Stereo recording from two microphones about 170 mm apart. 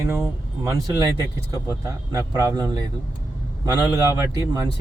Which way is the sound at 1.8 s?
20° right (ahead or behind).